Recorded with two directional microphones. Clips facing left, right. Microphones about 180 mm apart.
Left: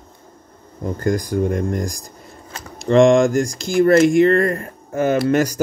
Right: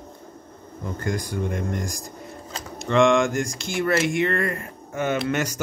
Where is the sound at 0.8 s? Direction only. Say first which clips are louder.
Left 8 dB; 40° left (ahead or behind).